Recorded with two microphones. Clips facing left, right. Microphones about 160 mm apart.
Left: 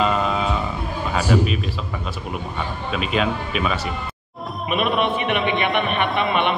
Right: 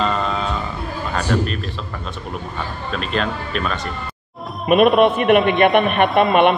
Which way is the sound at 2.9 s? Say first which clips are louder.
Left 1 dB; 5° left (ahead or behind).